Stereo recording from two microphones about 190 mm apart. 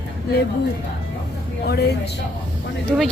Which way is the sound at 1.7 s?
60° left (ahead or behind).